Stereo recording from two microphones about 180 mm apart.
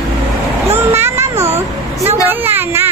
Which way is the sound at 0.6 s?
15° right (ahead or behind).